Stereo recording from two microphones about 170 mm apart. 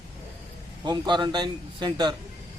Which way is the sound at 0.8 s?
25° right (ahead or behind).